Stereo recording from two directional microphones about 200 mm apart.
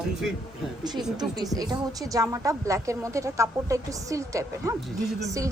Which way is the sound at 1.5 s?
20° right (ahead or behind).